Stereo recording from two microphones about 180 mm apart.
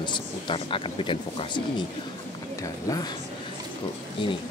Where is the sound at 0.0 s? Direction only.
25° left (ahead or behind).